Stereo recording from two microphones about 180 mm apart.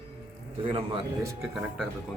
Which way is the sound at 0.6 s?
30° right (ahead or behind).